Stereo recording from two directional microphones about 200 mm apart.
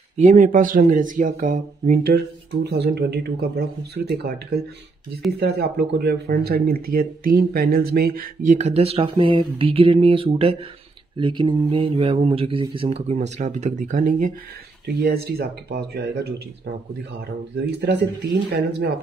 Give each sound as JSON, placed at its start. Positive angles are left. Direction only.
{"t": 0.2, "sound": "speech", "side_deg": -40}
{"t": 5.4, "sound": "speech", "side_deg": -55}
{"t": 15.0, "sound": "speech", "side_deg": -55}
{"t": 17.6, "sound": "speech", "side_deg": -55}